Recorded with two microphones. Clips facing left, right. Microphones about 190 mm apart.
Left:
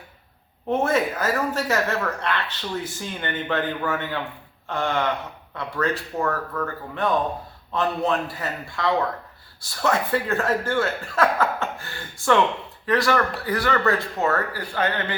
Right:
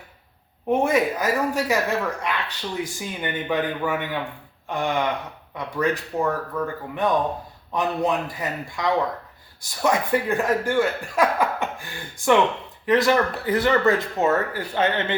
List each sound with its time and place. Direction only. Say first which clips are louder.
0.7 s speech: right 2 dB; 15° right (ahead or behind)